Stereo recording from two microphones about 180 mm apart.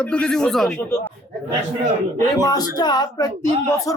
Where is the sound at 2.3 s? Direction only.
20° left (ahead or behind).